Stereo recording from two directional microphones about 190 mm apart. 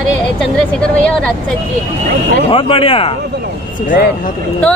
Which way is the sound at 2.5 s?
30° left (ahead or behind).